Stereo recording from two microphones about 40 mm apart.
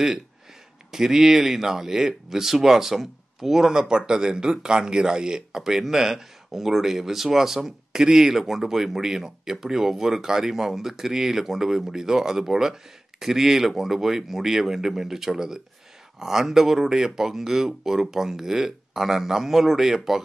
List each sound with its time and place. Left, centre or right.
0.9 s speech: centre